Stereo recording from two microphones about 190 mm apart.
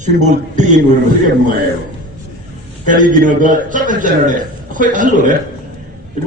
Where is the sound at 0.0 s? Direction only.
40° right (ahead or behind).